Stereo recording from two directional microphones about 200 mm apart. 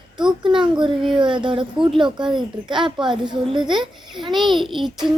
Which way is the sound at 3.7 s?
Centre (ahead or behind).